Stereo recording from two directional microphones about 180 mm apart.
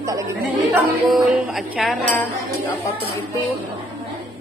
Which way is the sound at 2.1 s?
15° left (ahead or behind).